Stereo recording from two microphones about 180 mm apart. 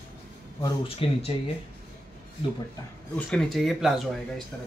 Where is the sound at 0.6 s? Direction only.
30° left (ahead or behind).